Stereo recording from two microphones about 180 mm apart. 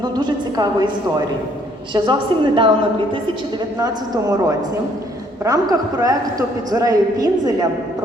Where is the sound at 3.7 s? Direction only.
20° right (ahead or behind).